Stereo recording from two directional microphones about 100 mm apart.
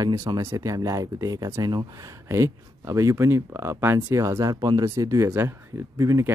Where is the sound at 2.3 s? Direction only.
30° right (ahead or behind).